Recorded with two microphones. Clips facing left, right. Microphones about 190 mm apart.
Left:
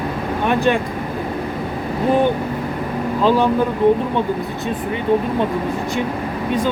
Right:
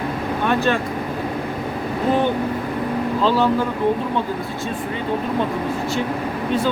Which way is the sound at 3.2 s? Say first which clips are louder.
Left 3 dB; 15° left (ahead or behind).